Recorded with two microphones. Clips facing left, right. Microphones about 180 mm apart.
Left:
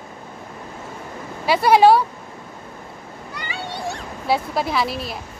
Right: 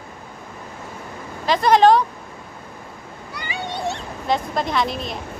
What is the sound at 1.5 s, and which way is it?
Speech, 10° left (ahead or behind).